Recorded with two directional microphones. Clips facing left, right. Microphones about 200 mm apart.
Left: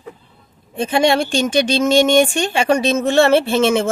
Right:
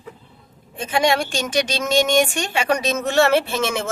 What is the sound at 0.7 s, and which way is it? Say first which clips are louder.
Speech: left 4 dB; 30° left (ahead or behind).